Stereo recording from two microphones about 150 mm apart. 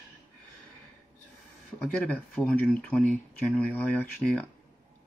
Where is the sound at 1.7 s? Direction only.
10° left (ahead or behind).